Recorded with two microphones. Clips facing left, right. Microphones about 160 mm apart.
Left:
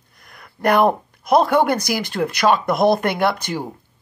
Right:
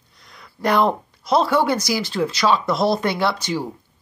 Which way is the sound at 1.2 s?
55° left (ahead or behind).